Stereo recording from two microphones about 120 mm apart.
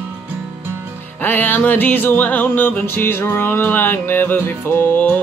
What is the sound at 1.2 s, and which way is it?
Music, 15° left (ahead or behind).